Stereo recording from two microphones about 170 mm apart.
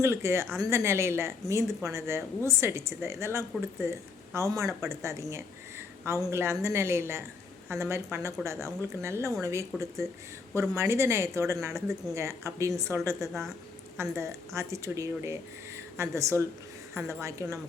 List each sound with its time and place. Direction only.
0.0 s a woman's voice: 15° right (ahead or behind)